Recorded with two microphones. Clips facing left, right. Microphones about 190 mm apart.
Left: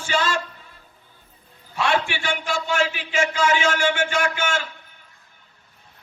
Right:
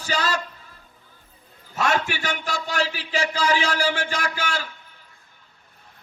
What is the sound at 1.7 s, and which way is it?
A man's voice, 45° right (ahead or behind).